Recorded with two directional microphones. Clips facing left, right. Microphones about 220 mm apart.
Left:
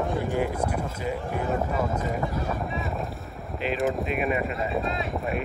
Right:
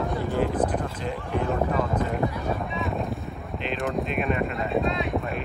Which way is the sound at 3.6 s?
5° left (ahead or behind).